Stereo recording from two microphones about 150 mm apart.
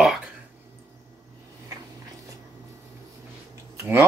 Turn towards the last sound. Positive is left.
turn(degrees=-20)  # may be behind; listen again after turning